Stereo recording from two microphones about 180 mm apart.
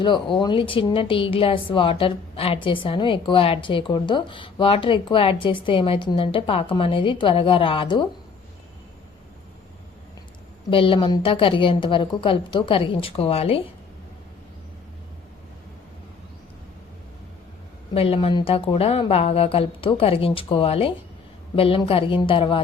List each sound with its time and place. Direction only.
0.0 s a woman's voice: 25° left (ahead or behind)
10.7 s a woman's voice: 30° left (ahead or behind)
17.9 s a woman's voice: 30° left (ahead or behind)